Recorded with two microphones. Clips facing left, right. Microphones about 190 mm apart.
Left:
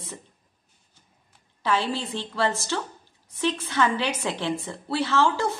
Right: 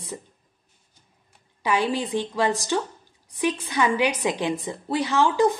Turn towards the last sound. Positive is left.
turn(degrees=-15)  # may be behind; listen again after turning